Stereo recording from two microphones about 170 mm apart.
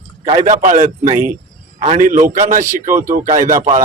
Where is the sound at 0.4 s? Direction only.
45° right (ahead or behind).